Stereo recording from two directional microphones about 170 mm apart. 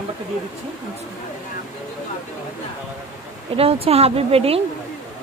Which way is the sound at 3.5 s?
35° right (ahead or behind).